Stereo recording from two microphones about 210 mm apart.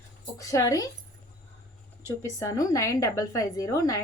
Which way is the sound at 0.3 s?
15° left (ahead or behind).